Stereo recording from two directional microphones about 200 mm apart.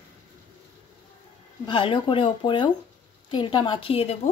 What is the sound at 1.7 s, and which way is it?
Speech, 25° left (ahead or behind).